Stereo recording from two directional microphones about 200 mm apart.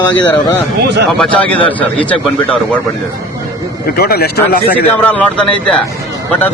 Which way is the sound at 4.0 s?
50° left (ahead or behind).